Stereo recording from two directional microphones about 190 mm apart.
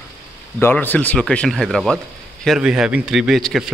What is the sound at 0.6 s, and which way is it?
Speech, 10° left (ahead or behind).